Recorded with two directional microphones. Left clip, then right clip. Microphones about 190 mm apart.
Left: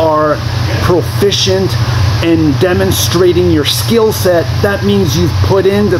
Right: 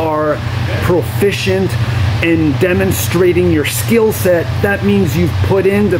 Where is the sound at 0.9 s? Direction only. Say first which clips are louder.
Left 2 dB; 30° right (ahead or behind).